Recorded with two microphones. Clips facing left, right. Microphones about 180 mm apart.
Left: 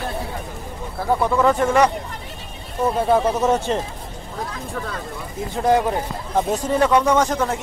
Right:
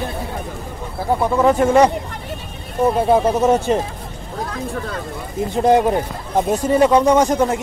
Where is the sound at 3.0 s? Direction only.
15° right (ahead or behind).